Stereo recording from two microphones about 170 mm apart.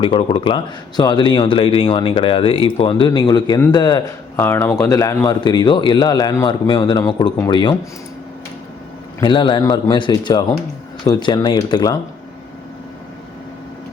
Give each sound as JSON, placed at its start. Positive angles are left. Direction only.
{"t": 0.0, "sound": "speech", "side_deg": 30}
{"t": 4.4, "sound": "speech", "side_deg": 15}
{"t": 9.2, "sound": "speech", "side_deg": 25}